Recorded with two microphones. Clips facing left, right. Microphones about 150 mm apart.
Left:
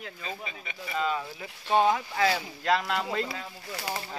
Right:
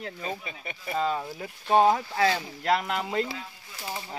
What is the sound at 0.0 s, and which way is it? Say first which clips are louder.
Speech: right 4 dB; 45° right (ahead or behind).